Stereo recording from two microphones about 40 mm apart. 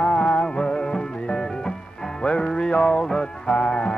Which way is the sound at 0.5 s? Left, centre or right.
Left.